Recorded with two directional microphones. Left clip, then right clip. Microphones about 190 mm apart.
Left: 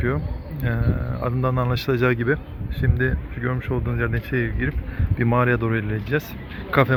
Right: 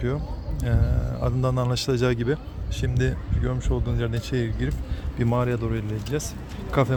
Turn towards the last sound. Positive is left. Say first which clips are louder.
# left 5 dB
turn(degrees=-15)  # may be behind; listen again after turning